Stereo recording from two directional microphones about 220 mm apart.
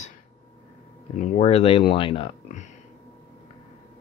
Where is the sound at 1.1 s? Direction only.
30° left (ahead or behind).